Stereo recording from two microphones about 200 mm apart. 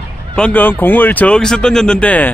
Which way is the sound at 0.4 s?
10° left (ahead or behind).